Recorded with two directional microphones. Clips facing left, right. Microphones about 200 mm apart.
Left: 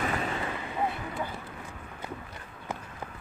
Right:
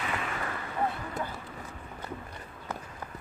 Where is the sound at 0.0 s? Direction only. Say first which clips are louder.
Left 4 dB; 35° left (ahead or behind).